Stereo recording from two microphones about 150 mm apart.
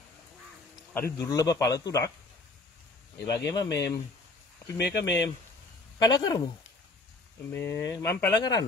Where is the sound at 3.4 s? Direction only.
25° left (ahead or behind).